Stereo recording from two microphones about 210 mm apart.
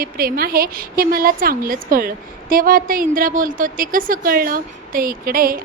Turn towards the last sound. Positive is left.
turn(degrees=-45)  # may be behind; listen again after turning